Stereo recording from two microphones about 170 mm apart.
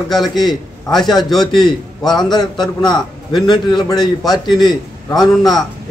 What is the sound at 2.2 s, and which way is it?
A man's voice, 25° left (ahead or behind).